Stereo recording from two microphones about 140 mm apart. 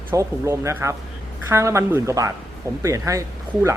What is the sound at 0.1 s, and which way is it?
Speech, 20° right (ahead or behind).